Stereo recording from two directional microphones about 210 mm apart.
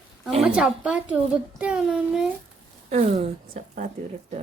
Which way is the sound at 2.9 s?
30° right (ahead or behind).